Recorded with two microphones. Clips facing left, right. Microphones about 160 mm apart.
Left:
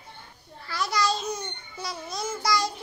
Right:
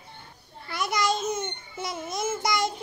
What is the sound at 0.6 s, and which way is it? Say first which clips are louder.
Babbling: even; 20° right (ahead or behind).